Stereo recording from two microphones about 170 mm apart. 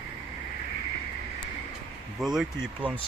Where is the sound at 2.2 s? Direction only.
Centre (ahead or behind).